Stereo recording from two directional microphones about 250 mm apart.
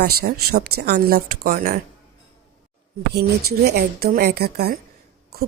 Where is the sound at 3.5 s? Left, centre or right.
Right.